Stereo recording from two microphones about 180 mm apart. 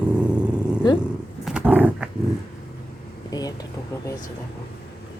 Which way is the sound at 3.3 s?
20° left (ahead or behind).